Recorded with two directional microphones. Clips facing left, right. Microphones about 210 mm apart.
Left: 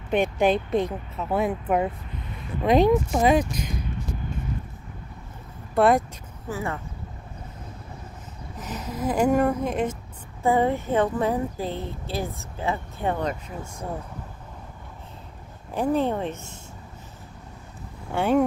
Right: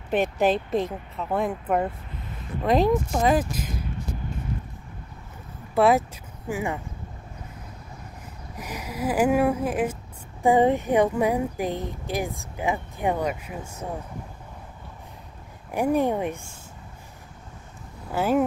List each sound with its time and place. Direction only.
0.1 s speech: 5° right (ahead or behind)
5.8 s speech: centre (ahead or behind)
6.5 s speech: 15° right (ahead or behind)
8.5 s speech: 10° right (ahead or behind)
15.7 s speech: 15° right (ahead or behind)
18.1 s speech: 5° right (ahead or behind)